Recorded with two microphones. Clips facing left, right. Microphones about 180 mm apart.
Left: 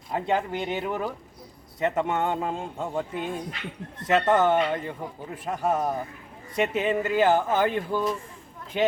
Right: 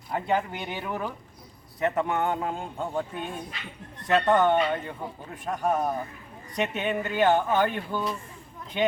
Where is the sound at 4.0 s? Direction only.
25° left (ahead or behind).